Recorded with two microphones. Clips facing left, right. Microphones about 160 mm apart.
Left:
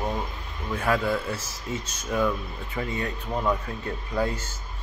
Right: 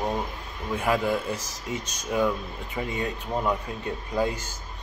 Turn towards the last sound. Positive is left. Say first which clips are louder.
# right 1 dB
turn(degrees=-15)  # may be behind; listen again after turning